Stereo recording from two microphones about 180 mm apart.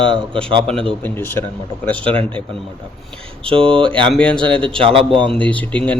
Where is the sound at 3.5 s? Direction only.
30° right (ahead or behind).